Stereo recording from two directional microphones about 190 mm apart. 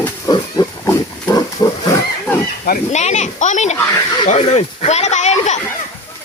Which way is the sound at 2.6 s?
40° left (ahead or behind).